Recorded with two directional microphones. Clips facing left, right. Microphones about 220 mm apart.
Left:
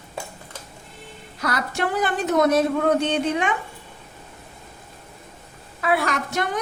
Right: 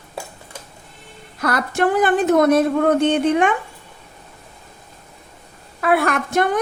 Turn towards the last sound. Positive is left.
turn(degrees=-55)  # may be behind; listen again after turning